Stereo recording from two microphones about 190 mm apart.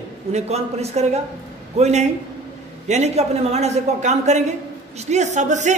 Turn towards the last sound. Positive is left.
turn(degrees=-40)  # may be behind; listen again after turning